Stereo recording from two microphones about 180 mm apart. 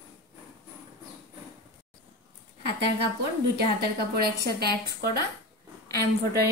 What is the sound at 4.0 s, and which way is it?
A woman's voice, 65° right (ahead or behind).